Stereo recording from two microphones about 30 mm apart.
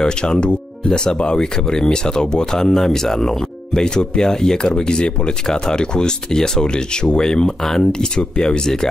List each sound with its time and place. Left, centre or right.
0.0 s speech: left
2.7 s speech: centre
3.7 s speech: left